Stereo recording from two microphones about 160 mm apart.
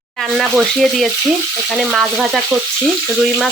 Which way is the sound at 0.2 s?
Centre (ahead or behind).